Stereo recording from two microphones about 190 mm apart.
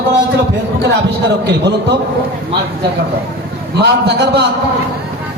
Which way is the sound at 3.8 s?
60° right (ahead or behind).